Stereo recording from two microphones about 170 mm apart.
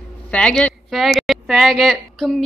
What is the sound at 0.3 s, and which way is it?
A woman's voice, 5° left (ahead or behind).